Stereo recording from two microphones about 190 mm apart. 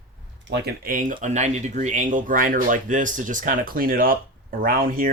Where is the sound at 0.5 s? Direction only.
50° right (ahead or behind).